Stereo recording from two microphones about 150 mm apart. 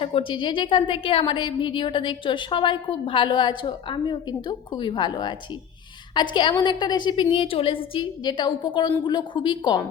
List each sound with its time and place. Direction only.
0.0 s a woman's voice: 35° left (ahead or behind)